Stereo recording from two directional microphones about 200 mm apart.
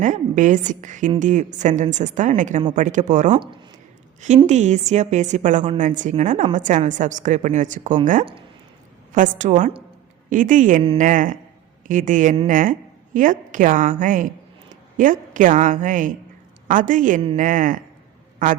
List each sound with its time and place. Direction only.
0.0 s a woman's voice: 40° right (ahead or behind)
4.4 s a woman's voice: 35° right (ahead or behind)
8.2 s speech: 25° right (ahead or behind)
9.1 s a woman's voice: 40° right (ahead or behind)